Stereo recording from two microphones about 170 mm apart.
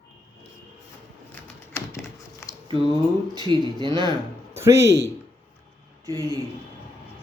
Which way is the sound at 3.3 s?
25° right (ahead or behind).